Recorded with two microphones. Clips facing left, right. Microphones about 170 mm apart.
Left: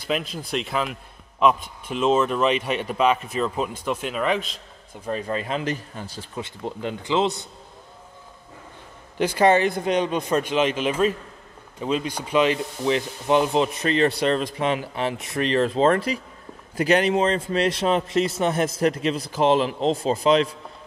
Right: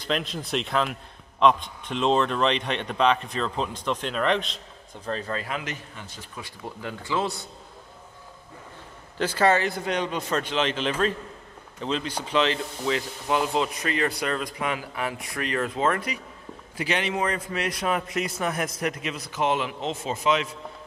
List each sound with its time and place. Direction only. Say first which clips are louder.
0.0 s speech: left 2 dB; 5° left (ahead or behind); by 5.6 s 20° left (ahead or behind)
5.6 s speech: left 8 dB; 35° left (ahead or behind)
9.2 s speech: left 4 dB; 15° left (ahead or behind); by 16.2 s 30° left (ahead or behind)
16.7 s a man's voice: left 8 dB; 40° left (ahead or behind)
17.2 s a man's voice: left 6 dB; 25° left (ahead or behind)